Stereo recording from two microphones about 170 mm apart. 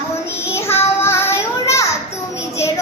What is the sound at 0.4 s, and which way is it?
Child singing, 15° left (ahead or behind).